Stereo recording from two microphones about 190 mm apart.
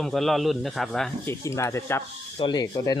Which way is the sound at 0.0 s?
Centre (ahead or behind).